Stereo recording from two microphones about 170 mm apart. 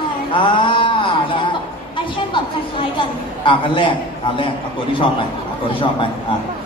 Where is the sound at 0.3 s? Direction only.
30° left (ahead or behind).